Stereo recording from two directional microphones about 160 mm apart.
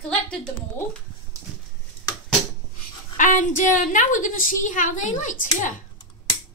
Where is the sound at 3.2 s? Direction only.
55° left (ahead or behind).